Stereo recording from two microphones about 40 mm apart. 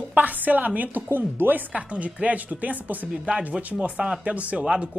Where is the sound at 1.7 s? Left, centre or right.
Right.